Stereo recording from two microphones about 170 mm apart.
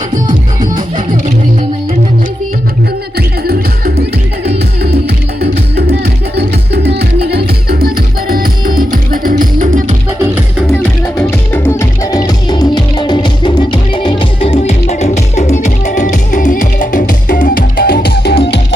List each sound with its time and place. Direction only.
0.3 s music: 50° right (ahead or behind)
3.2 s music: 65° right (ahead or behind); by 9.9 s 50° right (ahead or behind)
11.2 s music: 10° left (ahead or behind); by 18.6 s 85° left